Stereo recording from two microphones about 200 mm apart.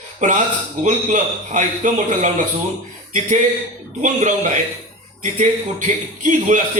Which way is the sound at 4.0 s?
40° right (ahead or behind).